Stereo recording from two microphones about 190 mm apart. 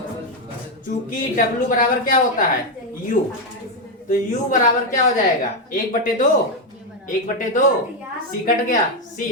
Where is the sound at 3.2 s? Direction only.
45° left (ahead or behind).